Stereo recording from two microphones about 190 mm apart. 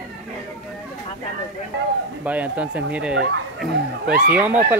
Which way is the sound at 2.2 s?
10° right (ahead or behind).